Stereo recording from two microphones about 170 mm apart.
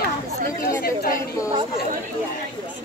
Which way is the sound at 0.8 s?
60° left (ahead or behind).